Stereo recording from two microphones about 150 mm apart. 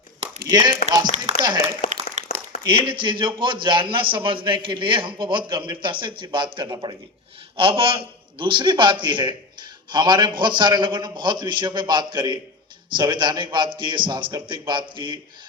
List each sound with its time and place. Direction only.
0.4 s speech: 25° right (ahead or behind)
1.1 s speech: 50° right (ahead or behind)
2.2 s a sound: 50° right (ahead or behind)
2.6 s a man's voice: 35° right (ahead or behind)